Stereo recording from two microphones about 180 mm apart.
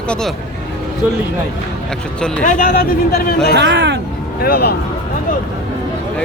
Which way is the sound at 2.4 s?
50° left (ahead or behind).